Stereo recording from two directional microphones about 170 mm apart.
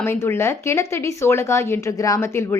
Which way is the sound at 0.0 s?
15° left (ahead or behind).